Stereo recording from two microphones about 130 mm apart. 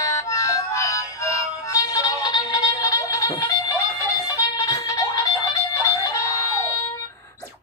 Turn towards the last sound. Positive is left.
turn(degrees=25)  # may be behind; listen again after turning